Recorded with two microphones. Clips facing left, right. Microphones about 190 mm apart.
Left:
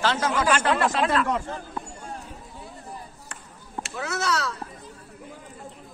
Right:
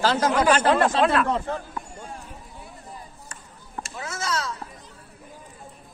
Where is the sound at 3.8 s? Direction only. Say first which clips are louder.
Left 4 dB; 65° left (ahead or behind).